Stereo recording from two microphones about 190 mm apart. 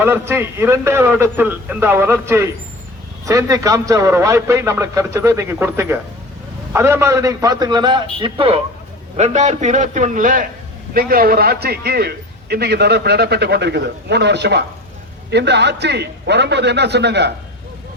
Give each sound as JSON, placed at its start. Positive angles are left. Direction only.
{"t": 0.0, "sound": "a man's voice", "side_deg": -10}